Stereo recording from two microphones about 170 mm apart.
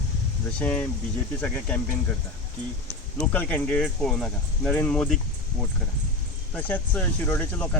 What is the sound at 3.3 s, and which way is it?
Speech, 5° left (ahead or behind).